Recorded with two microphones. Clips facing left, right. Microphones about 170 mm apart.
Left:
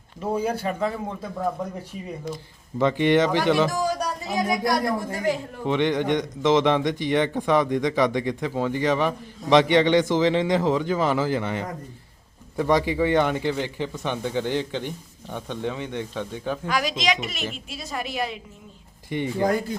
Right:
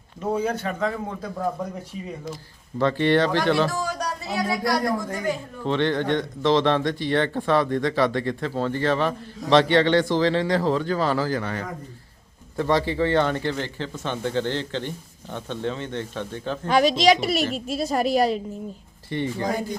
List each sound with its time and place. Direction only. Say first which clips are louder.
0.3 s speech: left 1 dB; 10° left (ahead or behind)
2.7 s speech: left 1 dB; 15° left (ahead or behind)
16.6 s a woman's voice: right 9 dB; 30° right (ahead or behind)
19.1 s speech: left 2 dB; 15° left (ahead or behind)